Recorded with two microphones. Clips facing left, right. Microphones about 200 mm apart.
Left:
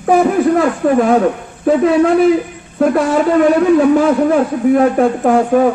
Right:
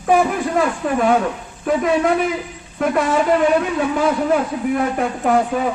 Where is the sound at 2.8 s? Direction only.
40° left (ahead or behind).